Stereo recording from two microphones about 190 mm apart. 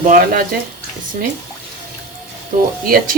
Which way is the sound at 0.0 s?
50° right (ahead or behind).